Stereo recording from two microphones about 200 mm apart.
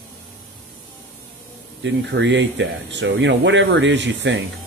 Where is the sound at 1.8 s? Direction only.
60° right (ahead or behind).